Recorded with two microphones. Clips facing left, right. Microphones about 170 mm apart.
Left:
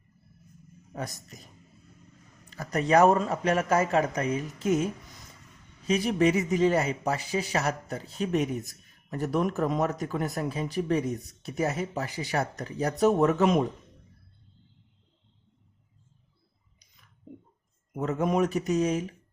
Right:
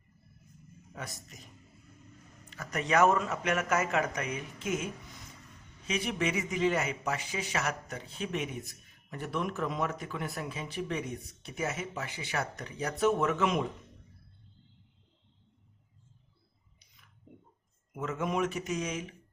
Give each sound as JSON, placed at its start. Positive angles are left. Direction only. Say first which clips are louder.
{"t": 2.5, "sound": "speech", "louder": "left 6 dB", "side_deg": 35}
{"t": 5.9, "sound": "speech", "louder": "left 8 dB", "side_deg": 35}
{"t": 17.9, "sound": "speech", "louder": "left 6 dB", "side_deg": 40}